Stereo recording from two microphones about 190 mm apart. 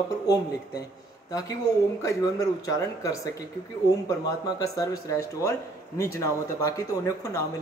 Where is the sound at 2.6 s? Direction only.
15° left (ahead or behind).